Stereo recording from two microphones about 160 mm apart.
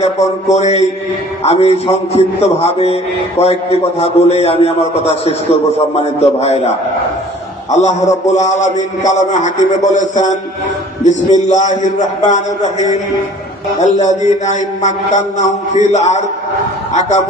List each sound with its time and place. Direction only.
0.0 s a man's voice: 45° left (ahead or behind)
13.7 s a man's voice: 45° left (ahead or behind)